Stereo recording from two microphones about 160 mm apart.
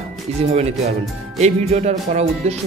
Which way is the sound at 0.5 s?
45° right (ahead or behind).